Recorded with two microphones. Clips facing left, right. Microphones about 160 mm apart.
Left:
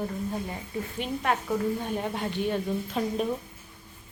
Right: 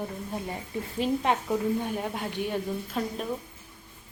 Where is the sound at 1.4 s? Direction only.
10° right (ahead or behind).